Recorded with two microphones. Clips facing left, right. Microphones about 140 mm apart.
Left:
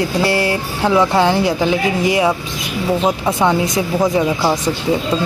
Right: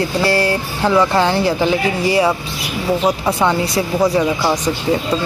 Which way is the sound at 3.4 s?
20° left (ahead or behind).